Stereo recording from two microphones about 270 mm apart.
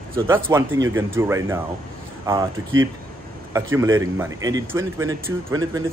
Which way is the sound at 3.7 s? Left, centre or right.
Centre.